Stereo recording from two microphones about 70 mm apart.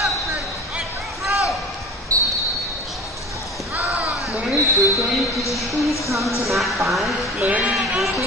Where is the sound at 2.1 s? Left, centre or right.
Right.